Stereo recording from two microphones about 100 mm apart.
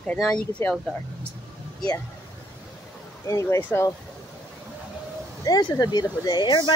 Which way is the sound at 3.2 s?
30° left (ahead or behind).